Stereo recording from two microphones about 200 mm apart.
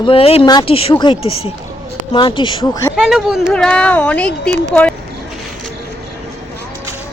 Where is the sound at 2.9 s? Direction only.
Centre (ahead or behind).